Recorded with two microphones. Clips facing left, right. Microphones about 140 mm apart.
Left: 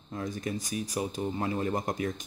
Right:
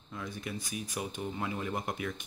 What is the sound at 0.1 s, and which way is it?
Speech, 40° left (ahead or behind).